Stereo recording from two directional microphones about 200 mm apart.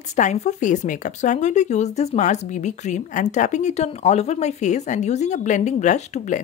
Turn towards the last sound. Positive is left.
turn(degrees=35)  # may be behind; listen again after turning